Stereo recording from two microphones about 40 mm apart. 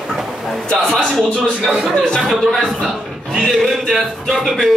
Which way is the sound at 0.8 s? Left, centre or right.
Centre.